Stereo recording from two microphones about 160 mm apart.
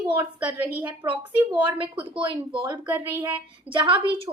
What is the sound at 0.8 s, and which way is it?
A woman's voice, 30° right (ahead or behind).